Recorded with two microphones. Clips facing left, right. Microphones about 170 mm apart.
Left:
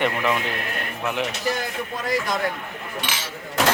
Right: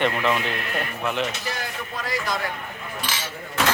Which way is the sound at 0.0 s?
15° left (ahead or behind).